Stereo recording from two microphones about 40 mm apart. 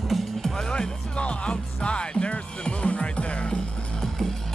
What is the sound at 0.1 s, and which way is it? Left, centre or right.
Music, centre.